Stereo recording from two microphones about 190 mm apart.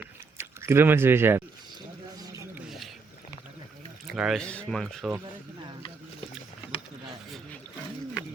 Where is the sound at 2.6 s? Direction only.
Centre (ahead or behind).